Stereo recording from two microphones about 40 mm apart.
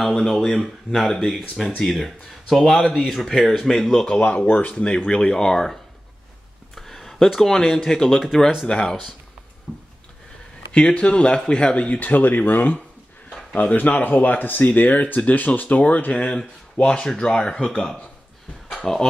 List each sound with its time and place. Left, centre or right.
0.0 s speech: centre
2.6 s speech: centre
4.5 s speech: left; by 5.8 s centre
6.7 s a sound: centre
7.3 s speech: centre
9.7 s a sound: centre
10.7 s speech: left
12.0 s speech: left
16.7 s speech: left
18.8 s speech: centre